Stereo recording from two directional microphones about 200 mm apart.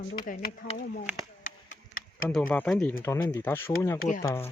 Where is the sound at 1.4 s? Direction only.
40° left (ahead or behind).